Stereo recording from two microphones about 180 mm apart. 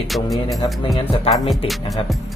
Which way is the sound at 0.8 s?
30° left (ahead or behind).